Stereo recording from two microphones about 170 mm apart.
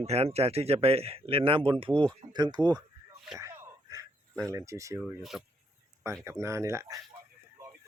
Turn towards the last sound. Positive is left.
turn(degrees=-15)  # may be behind; listen again after turning